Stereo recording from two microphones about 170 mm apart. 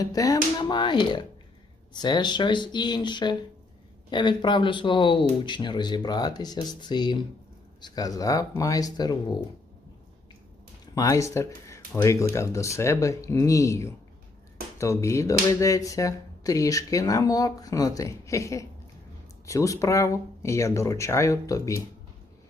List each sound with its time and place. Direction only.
0.0 s speech: 20° left (ahead or behind)
10.9 s speech: 20° left (ahead or behind)